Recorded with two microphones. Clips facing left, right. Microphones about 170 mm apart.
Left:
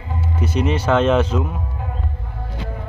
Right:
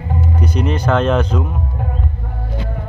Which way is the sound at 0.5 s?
5° left (ahead or behind).